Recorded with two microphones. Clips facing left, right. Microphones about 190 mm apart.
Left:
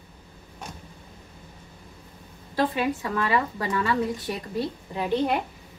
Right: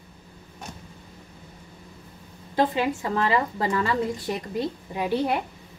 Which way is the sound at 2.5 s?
25° right (ahead or behind).